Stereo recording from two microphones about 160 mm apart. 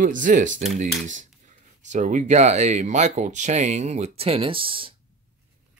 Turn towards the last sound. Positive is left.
turn(degrees=-35)  # may be behind; listen again after turning